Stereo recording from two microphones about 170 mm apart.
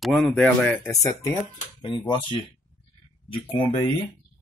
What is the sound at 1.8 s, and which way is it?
Speech, 30° left (ahead or behind).